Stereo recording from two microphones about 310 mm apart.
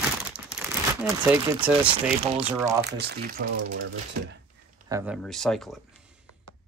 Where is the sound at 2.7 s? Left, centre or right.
Right.